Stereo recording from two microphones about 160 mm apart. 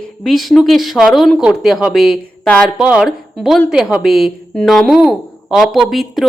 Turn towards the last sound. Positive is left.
turn(degrees=0)  # may be behind; listen again after turning